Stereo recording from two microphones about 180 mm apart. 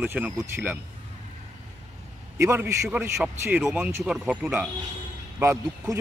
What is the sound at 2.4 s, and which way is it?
Speech, 15° right (ahead or behind).